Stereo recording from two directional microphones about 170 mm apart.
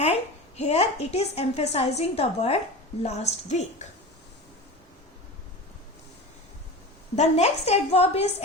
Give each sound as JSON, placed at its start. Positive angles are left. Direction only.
{"t": 0.0, "sound": "a woman's voice", "side_deg": 40}
{"t": 7.2, "sound": "a woman's voice", "side_deg": 40}